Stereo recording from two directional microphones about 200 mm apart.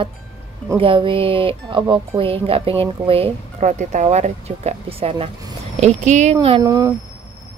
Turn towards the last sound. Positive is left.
turn(degrees=-15)  # may be behind; listen again after turning